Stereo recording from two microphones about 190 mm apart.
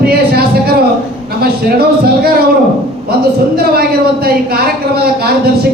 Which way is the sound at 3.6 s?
55° right (ahead or behind).